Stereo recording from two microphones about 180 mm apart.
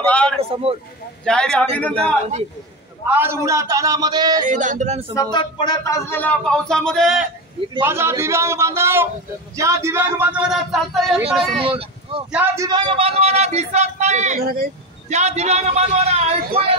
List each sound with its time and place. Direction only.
0.0 s speech: 5° left (ahead or behind)
0.4 s speech: 30° right (ahead or behind)
1.2 s speech: 5° left (ahead or behind)
3.1 s a man's voice: 15° right (ahead or behind)
4.5 s speech: 45° right (ahead or behind)
5.1 s speech: 20° left (ahead or behind)
6.0 s speech: 10° left (ahead or behind)
7.8 s speech: 15° right (ahead or behind)
11.2 s speech: 30° right (ahead or behind)
12.3 s speech: 10° right (ahead or behind)
12.6 s speech: 25° right (ahead or behind)
14.4 s speech: 55° right (ahead or behind)
15.0 s speech: 40° right (ahead or behind)